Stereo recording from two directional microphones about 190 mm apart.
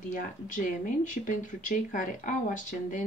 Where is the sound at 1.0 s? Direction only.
40° left (ahead or behind).